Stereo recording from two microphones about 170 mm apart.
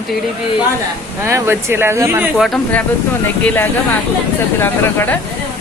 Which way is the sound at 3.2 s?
10° left (ahead or behind).